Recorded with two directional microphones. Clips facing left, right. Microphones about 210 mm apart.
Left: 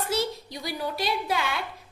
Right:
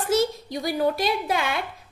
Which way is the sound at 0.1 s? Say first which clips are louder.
Right 10 dB; 50° right (ahead or behind).